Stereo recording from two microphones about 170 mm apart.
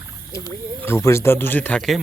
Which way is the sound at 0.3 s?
15° left (ahead or behind).